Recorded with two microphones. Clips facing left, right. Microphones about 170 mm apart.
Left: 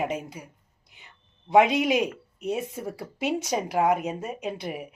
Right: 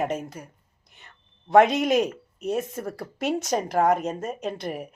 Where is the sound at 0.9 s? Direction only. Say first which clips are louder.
Right 1 dB; 10° left (ahead or behind).